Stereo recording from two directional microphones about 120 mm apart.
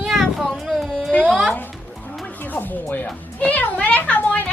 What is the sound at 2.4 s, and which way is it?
Music, 15° left (ahead or behind).